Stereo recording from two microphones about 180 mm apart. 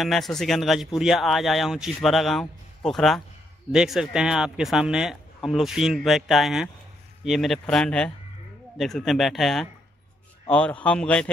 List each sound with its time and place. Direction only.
0.0 s a man's voice: centre (ahead or behind)